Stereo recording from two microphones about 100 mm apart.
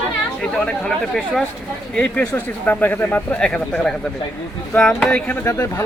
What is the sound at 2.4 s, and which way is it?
Speech, 20° left (ahead or behind).